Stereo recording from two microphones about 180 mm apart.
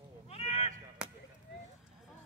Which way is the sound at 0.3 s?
35° left (ahead or behind).